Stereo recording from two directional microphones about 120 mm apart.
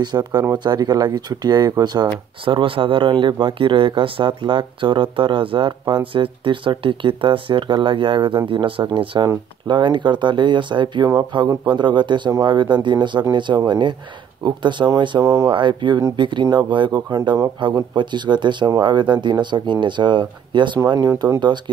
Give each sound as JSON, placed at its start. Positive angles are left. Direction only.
{"t": 0.0, "sound": "speech", "side_deg": -35}
{"t": 2.4, "sound": "speech", "side_deg": -45}
{"t": 20.8, "sound": "speech", "side_deg": -30}